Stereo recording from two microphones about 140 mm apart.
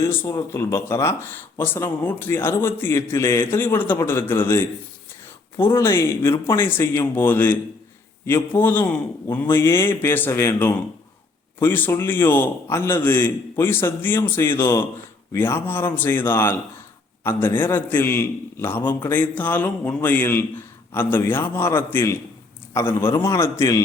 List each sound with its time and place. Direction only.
0.0 s a man's voice: 15° left (ahead or behind)
5.7 s a man's voice: 20° left (ahead or behind)